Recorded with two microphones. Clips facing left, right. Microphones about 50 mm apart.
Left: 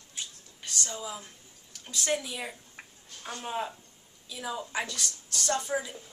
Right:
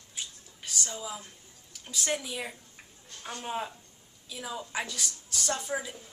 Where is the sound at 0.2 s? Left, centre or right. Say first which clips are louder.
Even; centre.